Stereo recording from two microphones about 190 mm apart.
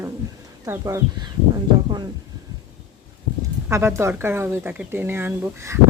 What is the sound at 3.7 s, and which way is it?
Speech, 15° right (ahead or behind).